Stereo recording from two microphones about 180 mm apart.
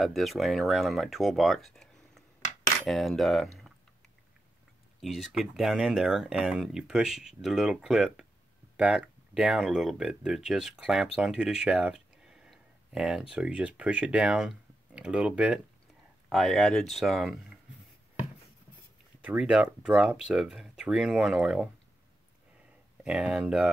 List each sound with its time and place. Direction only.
0.0 s speech: centre (ahead or behind)
5.0 s speech: centre (ahead or behind)
19.2 s speech: 5° right (ahead or behind)
23.0 s speech: 5° right (ahead or behind)